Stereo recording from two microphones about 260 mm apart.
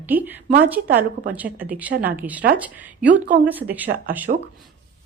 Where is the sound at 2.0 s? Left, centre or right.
Centre.